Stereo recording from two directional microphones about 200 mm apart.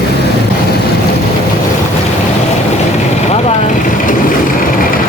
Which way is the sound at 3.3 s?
35° left (ahead or behind).